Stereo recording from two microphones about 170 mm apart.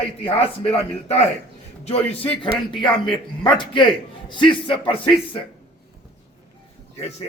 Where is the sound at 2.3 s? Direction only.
30° left (ahead or behind).